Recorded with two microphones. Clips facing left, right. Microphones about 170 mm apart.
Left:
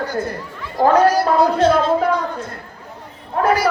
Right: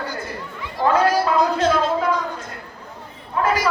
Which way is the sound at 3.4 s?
55° left (ahead or behind).